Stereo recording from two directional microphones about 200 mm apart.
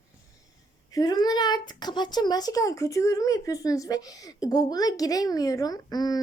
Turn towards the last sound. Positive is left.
turn(degrees=20)  # may be behind; listen again after turning